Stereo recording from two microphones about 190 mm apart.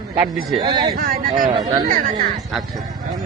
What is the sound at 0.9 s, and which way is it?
Speech, 50° right (ahead or behind).